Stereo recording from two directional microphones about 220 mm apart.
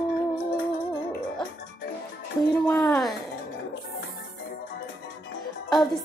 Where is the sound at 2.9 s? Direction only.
Centre (ahead or behind).